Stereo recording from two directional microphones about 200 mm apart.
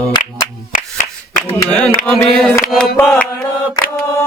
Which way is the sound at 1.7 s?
5° left (ahead or behind).